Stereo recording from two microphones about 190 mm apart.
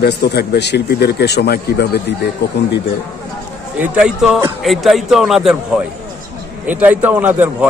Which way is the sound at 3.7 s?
5° right (ahead or behind).